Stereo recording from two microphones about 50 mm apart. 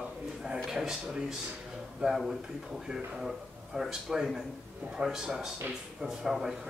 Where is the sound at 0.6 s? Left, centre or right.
Centre.